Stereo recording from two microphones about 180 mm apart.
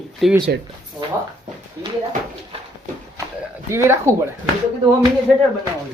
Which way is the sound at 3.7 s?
15° right (ahead or behind).